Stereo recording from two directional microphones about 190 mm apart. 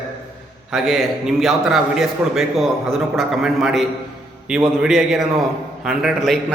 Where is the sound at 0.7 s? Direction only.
Centre (ahead or behind).